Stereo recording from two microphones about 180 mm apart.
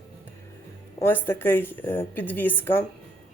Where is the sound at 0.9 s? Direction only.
10° left (ahead or behind).